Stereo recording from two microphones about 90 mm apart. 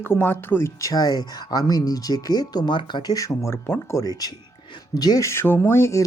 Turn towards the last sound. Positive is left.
turn(degrees=30)  # may be behind; listen again after turning